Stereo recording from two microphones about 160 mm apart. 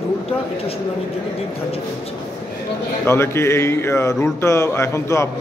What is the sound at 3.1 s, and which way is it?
Speech, 15° left (ahead or behind).